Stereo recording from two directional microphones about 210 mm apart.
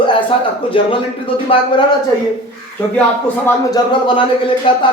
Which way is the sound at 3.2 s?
15° left (ahead or behind).